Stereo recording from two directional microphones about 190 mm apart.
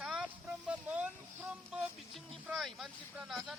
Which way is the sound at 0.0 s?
5° right (ahead or behind).